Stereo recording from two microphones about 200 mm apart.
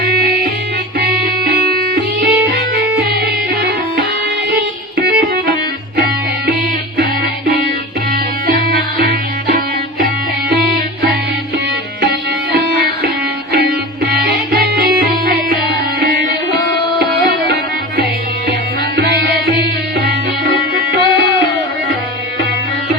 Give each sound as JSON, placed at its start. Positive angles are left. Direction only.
{"t": 0.9, "sound": "music", "side_deg": -50}
{"t": 6.9, "sound": "music", "side_deg": -50}